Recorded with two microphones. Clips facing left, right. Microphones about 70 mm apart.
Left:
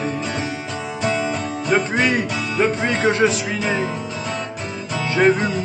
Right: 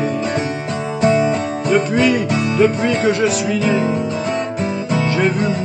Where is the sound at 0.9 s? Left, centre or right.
Right.